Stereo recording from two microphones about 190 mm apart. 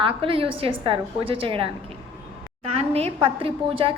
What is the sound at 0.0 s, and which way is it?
A woman's voice, 30° right (ahead or behind).